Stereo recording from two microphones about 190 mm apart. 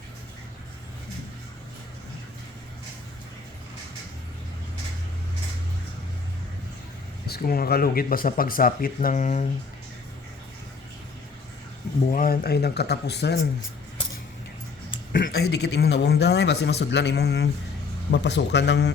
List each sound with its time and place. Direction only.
7.3 s speech: 55° left (ahead or behind)
12.1 s a man's voice: 50° left (ahead or behind)
15.1 s a man's voice: 50° left (ahead or behind); by 18.9 s 65° left (ahead or behind)